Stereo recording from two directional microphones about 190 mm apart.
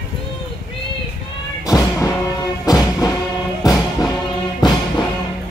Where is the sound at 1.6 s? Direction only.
15° left (ahead or behind).